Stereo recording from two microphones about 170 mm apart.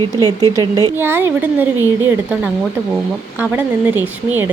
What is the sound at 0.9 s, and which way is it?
Speech, 15° right (ahead or behind).